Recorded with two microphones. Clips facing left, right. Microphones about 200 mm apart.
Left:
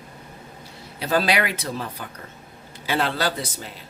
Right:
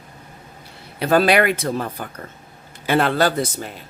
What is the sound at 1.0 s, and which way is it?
Speech, 55° right (ahead or behind).